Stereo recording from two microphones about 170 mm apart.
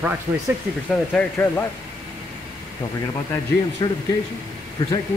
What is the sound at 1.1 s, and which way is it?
Speech, 10° left (ahead or behind).